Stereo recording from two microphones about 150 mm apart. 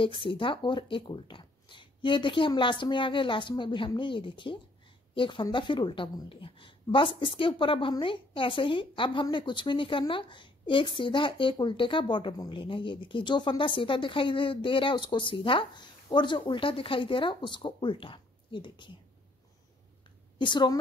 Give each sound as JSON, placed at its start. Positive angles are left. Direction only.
{"t": 0.0, "sound": "a woman's voice", "side_deg": 35}
{"t": 20.3, "sound": "a woman's voice", "side_deg": 30}